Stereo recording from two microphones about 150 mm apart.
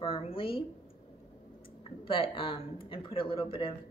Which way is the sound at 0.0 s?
40° left (ahead or behind).